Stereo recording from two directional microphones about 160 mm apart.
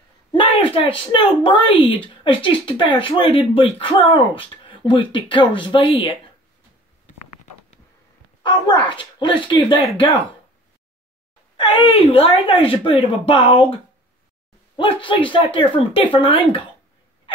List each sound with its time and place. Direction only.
0.3 s a woman's voice: 30° left (ahead or behind)
8.4 s speech: 25° left (ahead or behind)
11.5 s a woman's voice: 35° left (ahead or behind)
14.8 s a woman's voice: 30° left (ahead or behind)